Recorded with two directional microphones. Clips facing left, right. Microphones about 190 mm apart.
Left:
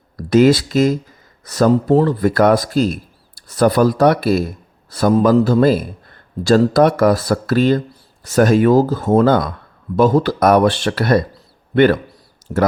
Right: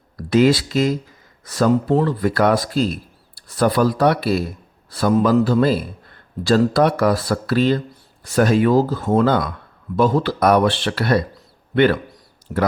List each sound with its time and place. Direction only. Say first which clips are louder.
0.2 s a man's voice: left 3 dB; 45° left (ahead or behind)